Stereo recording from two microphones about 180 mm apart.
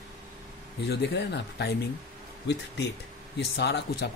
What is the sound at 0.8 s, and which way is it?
Speech, 70° left (ahead or behind).